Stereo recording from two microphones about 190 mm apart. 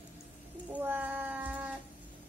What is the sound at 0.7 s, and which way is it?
Cat, 10° right (ahead or behind).